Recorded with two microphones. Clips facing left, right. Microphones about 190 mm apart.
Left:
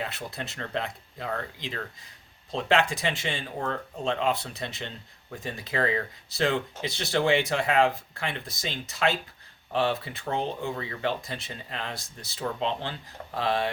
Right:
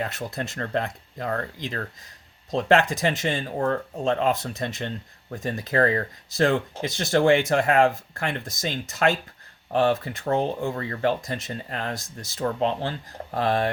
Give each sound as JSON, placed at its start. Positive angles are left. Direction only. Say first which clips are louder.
{"t": 0.0, "sound": "speech", "louder": "right 5 dB", "side_deg": -45}